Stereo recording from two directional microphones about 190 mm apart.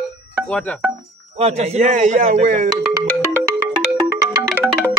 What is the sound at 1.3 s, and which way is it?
A man's voice, 35° right (ahead or behind).